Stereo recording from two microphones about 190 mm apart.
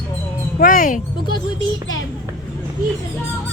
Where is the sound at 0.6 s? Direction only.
45° left (ahead or behind).